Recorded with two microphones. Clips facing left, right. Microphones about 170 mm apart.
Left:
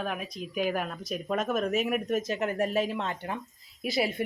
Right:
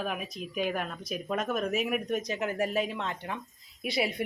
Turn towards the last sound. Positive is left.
turn(degrees=0)  # may be behind; listen again after turning